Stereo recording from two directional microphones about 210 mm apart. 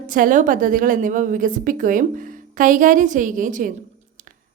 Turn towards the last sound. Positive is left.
turn(degrees=-40)  # may be behind; listen again after turning